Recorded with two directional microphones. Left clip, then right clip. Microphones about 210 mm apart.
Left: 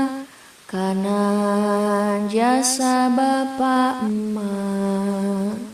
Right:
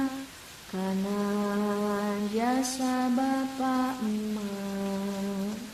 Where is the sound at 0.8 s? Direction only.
45° left (ahead or behind).